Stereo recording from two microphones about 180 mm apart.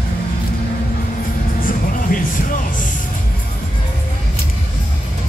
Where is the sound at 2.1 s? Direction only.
50° left (ahead or behind).